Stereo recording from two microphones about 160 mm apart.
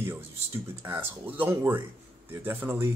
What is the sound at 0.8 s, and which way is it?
Speech, 15° right (ahead or behind).